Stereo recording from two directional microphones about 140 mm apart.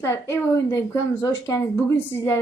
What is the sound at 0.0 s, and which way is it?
Speech, 20° left (ahead or behind).